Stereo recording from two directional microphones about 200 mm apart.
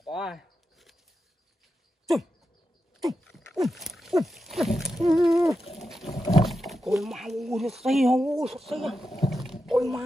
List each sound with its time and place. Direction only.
0.1 s a sound: centre (ahead or behind)
3.0 s wild animals: centre (ahead or behind)
5.1 s a sound: centre (ahead or behind)
6.0 s rowboat: 30° left (ahead or behind)
6.4 s roaring cats: centre (ahead or behind)
7.0 s speech: centre (ahead or behind)